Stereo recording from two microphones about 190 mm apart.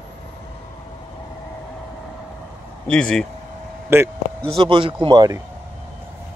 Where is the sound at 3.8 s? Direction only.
10° right (ahead or behind).